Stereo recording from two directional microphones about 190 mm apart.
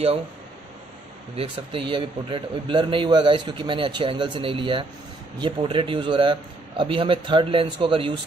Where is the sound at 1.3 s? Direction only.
30° right (ahead or behind).